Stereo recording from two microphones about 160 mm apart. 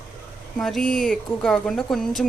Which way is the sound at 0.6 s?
5° left (ahead or behind).